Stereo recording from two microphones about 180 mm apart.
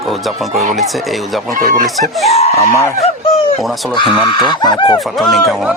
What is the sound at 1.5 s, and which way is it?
Speech, 50° right (ahead or behind).